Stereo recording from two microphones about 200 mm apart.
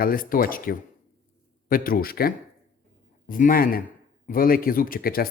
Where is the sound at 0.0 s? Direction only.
45° left (ahead or behind).